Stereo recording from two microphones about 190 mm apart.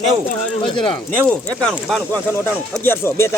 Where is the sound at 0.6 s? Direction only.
25° left (ahead or behind).